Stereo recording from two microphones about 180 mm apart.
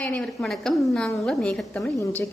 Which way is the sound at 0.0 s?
5° left (ahead or behind).